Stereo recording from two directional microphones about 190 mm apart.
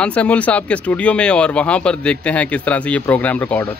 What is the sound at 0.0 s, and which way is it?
Speech, 5° left (ahead or behind).